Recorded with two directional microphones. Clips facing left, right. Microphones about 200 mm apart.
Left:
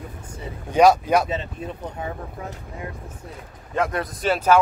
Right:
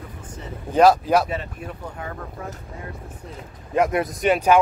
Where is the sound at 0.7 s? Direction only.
Centre (ahead or behind).